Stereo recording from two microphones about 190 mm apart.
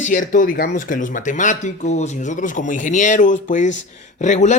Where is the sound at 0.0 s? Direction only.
45° left (ahead or behind).